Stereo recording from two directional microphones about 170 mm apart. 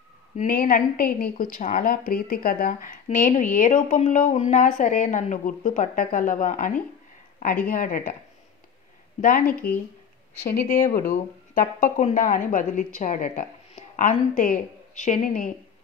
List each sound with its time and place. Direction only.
0.4 s a woman's voice: 55° left (ahead or behind)
7.7 s speech: 55° left (ahead or behind)
9.2 s a woman's voice: 55° left (ahead or behind)